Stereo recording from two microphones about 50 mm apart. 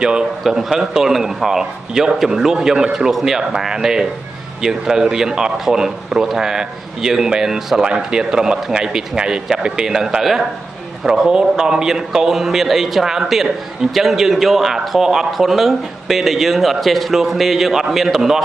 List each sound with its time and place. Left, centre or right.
0.0 s speech: centre
0.4 s a man's voice: centre